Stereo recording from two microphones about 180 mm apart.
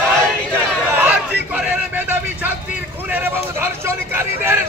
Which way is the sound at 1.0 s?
10° right (ahead or behind).